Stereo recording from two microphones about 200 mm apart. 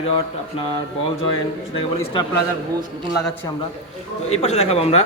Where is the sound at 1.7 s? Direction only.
25° left (ahead or behind).